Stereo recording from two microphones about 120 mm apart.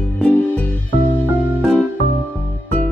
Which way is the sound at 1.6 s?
Centre (ahead or behind).